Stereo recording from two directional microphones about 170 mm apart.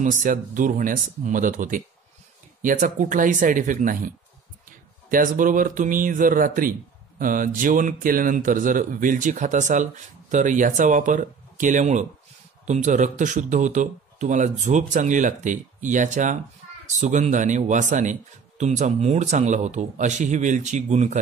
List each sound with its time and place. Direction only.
0.0 s speech: 50° right (ahead or behind)
5.1 s speech: 55° right (ahead or behind)